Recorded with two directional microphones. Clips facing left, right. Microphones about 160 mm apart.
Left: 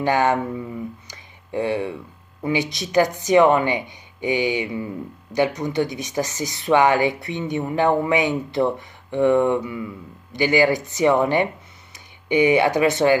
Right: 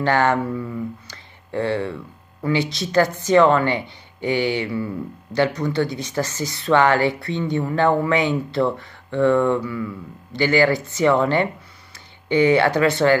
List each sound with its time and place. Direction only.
0.0 s a woman's voice: 15° left (ahead or behind)